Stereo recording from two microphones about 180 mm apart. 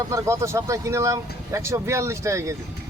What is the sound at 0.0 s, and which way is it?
Speech, 15° right (ahead or behind).